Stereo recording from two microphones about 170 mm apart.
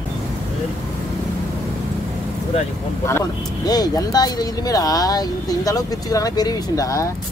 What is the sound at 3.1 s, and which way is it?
Speech, 20° left (ahead or behind).